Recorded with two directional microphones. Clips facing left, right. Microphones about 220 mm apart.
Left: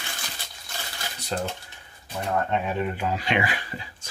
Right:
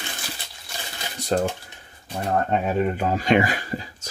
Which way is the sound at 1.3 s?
45° right (ahead or behind).